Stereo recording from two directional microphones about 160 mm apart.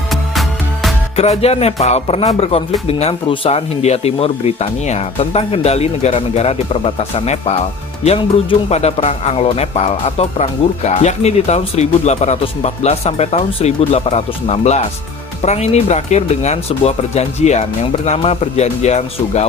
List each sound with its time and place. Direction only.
0.3 s music: centre (ahead or behind)
1.1 s speech: 40° left (ahead or behind)